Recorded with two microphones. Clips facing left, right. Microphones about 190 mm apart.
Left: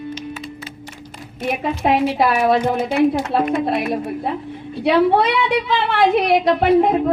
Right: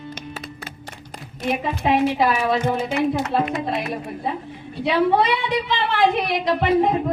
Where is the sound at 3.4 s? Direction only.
55° left (ahead or behind).